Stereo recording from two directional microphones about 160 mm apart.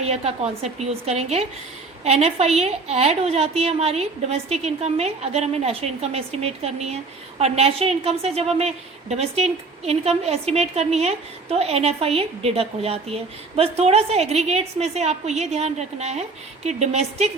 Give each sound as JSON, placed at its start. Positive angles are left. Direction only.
{"t": 0.0, "sound": "a woman's voice", "side_deg": -40}